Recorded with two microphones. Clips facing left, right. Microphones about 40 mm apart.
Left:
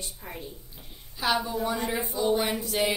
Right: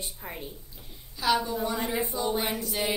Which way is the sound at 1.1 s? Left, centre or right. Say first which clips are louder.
Right 1 dB; centre.